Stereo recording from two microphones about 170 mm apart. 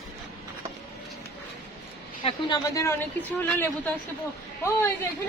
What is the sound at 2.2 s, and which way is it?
A woman's voice, 30° left (ahead or behind).